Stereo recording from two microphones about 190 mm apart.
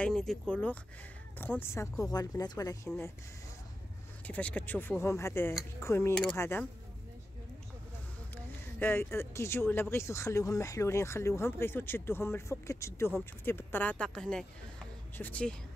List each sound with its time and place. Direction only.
0.0 s speech: 5° left (ahead or behind); by 2.9 s 20° left (ahead or behind)
4.3 s speech: 5° left (ahead or behind)
8.7 s speech: 10° left (ahead or behind)